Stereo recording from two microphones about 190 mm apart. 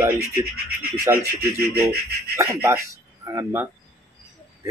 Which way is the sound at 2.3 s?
15° right (ahead or behind).